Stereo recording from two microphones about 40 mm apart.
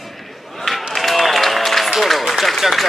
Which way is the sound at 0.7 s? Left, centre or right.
Centre.